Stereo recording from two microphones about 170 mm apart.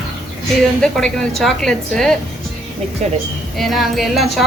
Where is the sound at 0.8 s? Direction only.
5° left (ahead or behind).